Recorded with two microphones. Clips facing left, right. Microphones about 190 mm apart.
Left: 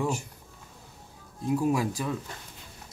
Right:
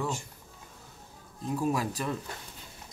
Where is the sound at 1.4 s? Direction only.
10° left (ahead or behind).